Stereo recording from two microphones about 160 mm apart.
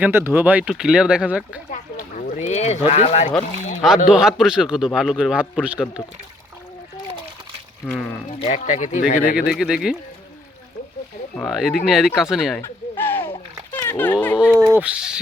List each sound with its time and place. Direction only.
0.0 s a man's voice: 15° right (ahead or behind)
1.7 s boat: 55° left (ahead or behind)
3.8 s a man's voice: 5° right (ahead or behind)
8.3 s speech: 45° left (ahead or behind); by 9.4 s 65° left (ahead or behind)
9.5 s a man's voice: 5° right (ahead or behind)
11.3 s a man's voice: centre (ahead or behind)
12.6 s a sound: 15° left (ahead or behind)
13.8 s a man's voice: 10° left (ahead or behind)
14.7 s a man's voice: 10° right (ahead or behind)